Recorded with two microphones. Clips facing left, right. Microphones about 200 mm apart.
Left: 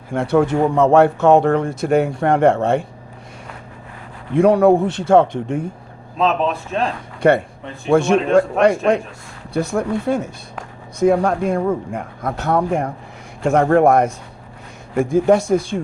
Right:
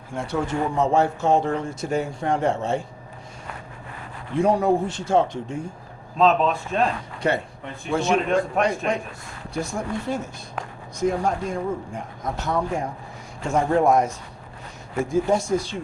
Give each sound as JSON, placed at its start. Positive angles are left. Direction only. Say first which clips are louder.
{"t": 0.1, "sound": "speech", "louder": "left 10 dB", "side_deg": 60}
{"t": 4.4, "sound": "speech", "louder": "left 7 dB", "side_deg": 60}
{"t": 7.2, "sound": "speech", "louder": "left 10 dB", "side_deg": 55}
{"t": 15.1, "sound": "speech", "louder": "left 7 dB", "side_deg": 60}